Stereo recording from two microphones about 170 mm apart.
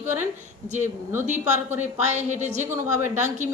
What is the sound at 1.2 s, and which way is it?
Speech, 45° right (ahead or behind).